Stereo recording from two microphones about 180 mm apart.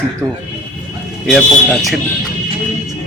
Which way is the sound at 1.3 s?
Centre (ahead or behind).